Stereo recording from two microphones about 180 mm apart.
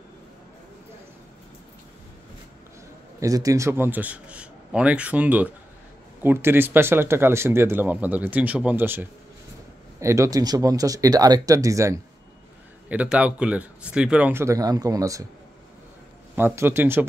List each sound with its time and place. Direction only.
3.2 s speech: 20° right (ahead or behind)
16.3 s speech: 10° right (ahead or behind)